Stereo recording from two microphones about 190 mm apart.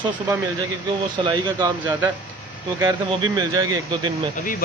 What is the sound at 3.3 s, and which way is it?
Speech, 20° right (ahead or behind).